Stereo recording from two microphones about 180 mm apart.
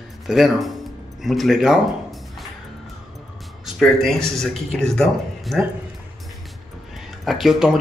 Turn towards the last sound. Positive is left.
turn(degrees=0)  # may be behind; listen again after turning